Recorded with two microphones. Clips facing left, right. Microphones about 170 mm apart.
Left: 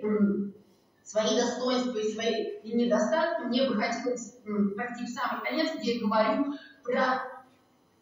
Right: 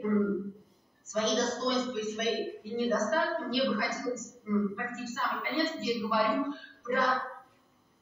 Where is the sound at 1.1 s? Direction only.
35° left (ahead or behind).